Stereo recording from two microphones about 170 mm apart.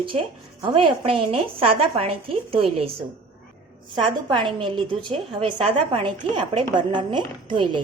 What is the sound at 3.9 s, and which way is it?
A woman's voice, 25° right (ahead or behind).